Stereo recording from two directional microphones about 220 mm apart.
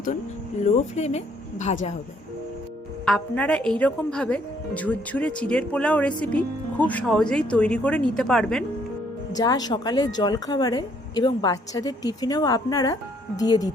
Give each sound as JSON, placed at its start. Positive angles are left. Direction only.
{"t": 0.6, "sound": "speech", "side_deg": 30}
{"t": 3.1, "sound": "a woman's voice", "side_deg": 5}
{"t": 9.3, "sound": "a woman's voice", "side_deg": 20}